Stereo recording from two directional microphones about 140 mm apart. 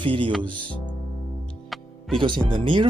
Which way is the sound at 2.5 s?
35° right (ahead or behind).